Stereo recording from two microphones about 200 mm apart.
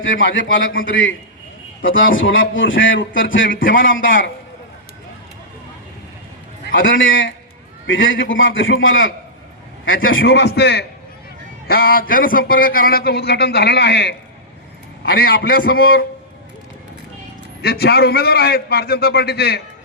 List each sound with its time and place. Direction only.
0.2 s a man's voice: 75° left (ahead or behind)
3.4 s a man's voice: 45° left (ahead or behind)
3.8 s a man's voice: 75° left (ahead or behind)
7.0 s a man's voice: 75° left (ahead or behind)
10.2 s a man's voice: 55° left (ahead or behind)
17.6 s a man's voice: 50° left (ahead or behind)